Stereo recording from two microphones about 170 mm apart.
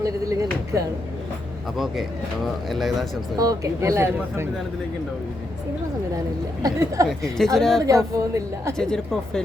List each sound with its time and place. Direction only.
0.0 s speech: 20° right (ahead or behind)
1.7 s speech: centre (ahead or behind)
3.3 s speech: 20° right (ahead or behind)
6.6 s speech: 20° right (ahead or behind)
7.1 s speech: centre (ahead or behind)
7.9 s a woman's voice: 20° right (ahead or behind)
8.8 s speech: 5° left (ahead or behind)